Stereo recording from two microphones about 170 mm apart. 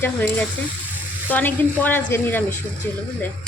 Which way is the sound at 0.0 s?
10° left (ahead or behind).